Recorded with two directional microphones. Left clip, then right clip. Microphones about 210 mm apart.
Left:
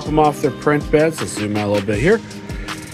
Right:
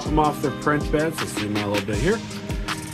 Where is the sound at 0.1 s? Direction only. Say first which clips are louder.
Left 6 dB; 15° left (ahead or behind).